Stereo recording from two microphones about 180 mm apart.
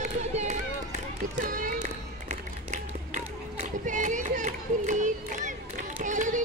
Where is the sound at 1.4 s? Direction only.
50° right (ahead or behind).